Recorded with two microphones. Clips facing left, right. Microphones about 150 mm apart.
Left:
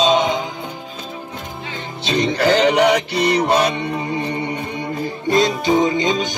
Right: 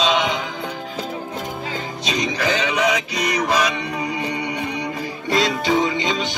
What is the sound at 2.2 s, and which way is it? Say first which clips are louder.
Music: left 7 dB; 30° left (ahead or behind).